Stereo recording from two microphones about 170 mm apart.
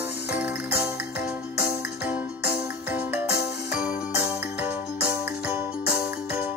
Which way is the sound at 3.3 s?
75° left (ahead or behind).